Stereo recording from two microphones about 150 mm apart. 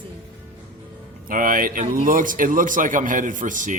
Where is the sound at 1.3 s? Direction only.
65° right (ahead or behind).